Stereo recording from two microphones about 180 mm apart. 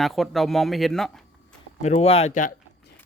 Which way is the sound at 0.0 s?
Centre (ahead or behind).